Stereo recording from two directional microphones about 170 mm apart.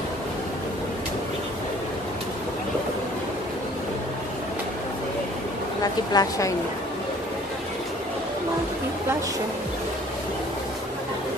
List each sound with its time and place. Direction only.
6.1 s a woman's voice: 20° left (ahead or behind)